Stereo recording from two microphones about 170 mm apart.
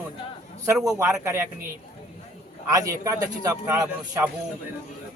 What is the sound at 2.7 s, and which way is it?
A man's voice, 20° right (ahead or behind).